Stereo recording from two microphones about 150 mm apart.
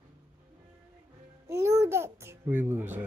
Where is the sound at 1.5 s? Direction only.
20° right (ahead or behind).